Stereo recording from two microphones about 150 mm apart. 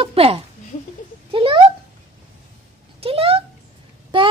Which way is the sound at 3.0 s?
40° right (ahead or behind).